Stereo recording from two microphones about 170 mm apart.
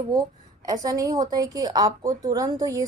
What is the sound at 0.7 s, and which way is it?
A woman's voice, 20° right (ahead or behind).